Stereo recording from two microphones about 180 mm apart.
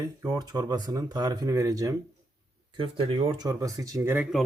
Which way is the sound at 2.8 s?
30° right (ahead or behind).